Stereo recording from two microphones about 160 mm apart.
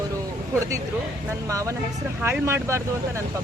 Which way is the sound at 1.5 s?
20° right (ahead or behind).